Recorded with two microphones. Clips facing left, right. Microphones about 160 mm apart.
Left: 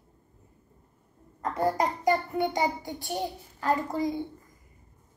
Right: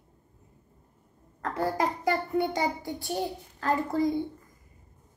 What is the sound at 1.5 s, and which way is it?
A child's voice, 20° left (ahead or behind).